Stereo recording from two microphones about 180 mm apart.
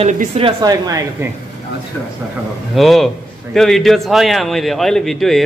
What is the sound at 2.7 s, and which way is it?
A man's voice, centre (ahead or behind).